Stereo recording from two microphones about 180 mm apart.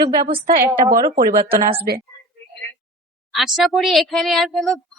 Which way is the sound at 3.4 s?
Centre (ahead or behind).